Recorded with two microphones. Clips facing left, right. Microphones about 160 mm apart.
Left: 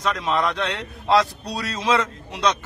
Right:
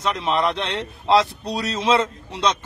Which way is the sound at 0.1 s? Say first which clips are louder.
Right 2 dB; 25° right (ahead or behind).